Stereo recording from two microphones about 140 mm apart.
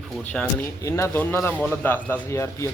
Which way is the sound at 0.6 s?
20° left (ahead or behind).